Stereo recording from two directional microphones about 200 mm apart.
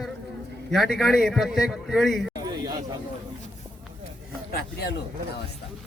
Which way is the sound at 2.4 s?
20° right (ahead or behind).